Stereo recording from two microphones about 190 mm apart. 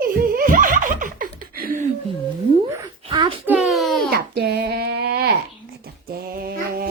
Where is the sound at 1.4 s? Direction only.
50° right (ahead or behind).